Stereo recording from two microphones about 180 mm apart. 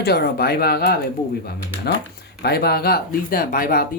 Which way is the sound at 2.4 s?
60° left (ahead or behind).